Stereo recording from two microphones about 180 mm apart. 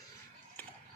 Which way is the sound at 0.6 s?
10° left (ahead or behind).